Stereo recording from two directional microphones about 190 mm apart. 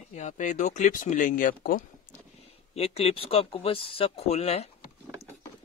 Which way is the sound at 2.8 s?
30° left (ahead or behind).